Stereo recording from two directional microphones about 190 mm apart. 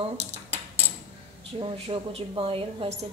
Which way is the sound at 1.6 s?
30° right (ahead or behind).